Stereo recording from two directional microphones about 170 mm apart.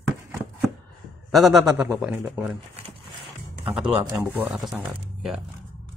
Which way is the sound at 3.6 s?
5° right (ahead or behind).